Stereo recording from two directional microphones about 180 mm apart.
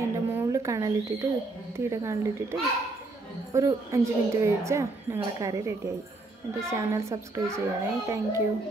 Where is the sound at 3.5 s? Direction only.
15° right (ahead or behind).